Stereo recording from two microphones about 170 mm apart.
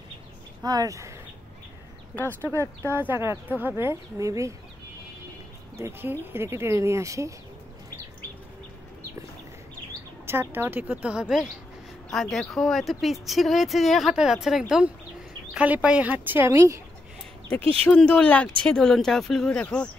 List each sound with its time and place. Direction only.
0.6 s speech: 20° right (ahead or behind)
2.4 s speech: 15° right (ahead or behind)
5.8 s speech: 15° right (ahead or behind)
10.2 s speech: 15° right (ahead or behind)
17.8 s speech: 5° left (ahead or behind)